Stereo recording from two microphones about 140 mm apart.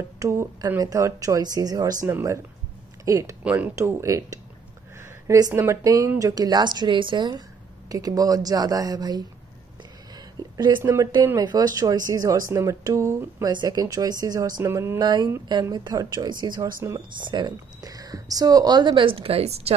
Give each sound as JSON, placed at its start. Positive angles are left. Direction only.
{"t": 0.2, "sound": "speech", "side_deg": -20}
{"t": 3.4, "sound": "speech", "side_deg": -10}
{"t": 3.7, "sound": "speech", "side_deg": -20}
{"t": 10.1, "sound": "a sound", "side_deg": -30}
{"t": 10.8, "sound": "speech", "side_deg": -20}
{"t": 15.0, "sound": "speech", "side_deg": -30}